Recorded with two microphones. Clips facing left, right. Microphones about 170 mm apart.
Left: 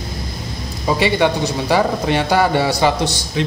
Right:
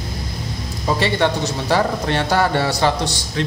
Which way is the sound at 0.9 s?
10° left (ahead or behind).